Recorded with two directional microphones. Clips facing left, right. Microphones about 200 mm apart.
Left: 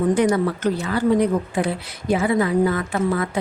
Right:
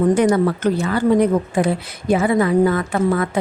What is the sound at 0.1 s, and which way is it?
A woman's voice, 50° right (ahead or behind).